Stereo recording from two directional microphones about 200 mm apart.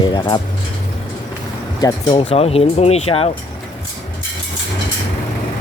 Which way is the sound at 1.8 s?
20° left (ahead or behind).